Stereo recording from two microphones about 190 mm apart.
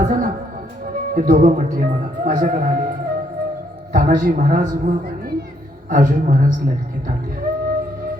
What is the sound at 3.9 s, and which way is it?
Speech, 45° right (ahead or behind).